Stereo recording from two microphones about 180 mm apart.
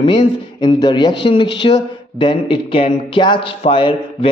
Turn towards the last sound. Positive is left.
turn(degrees=30)  # may be behind; listen again after turning